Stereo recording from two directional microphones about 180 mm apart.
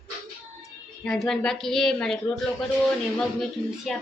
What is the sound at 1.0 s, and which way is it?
A woman's voice, centre (ahead or behind).